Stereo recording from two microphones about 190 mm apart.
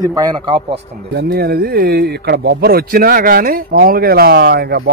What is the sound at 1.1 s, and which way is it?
Speech, 55° right (ahead or behind).